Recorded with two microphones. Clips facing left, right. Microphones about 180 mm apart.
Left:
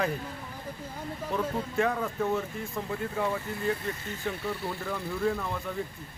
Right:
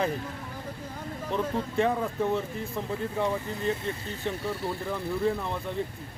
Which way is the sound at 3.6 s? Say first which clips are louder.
Even; 25° right (ahead or behind).